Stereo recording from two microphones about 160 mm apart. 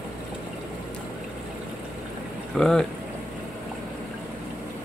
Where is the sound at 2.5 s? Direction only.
5° left (ahead or behind).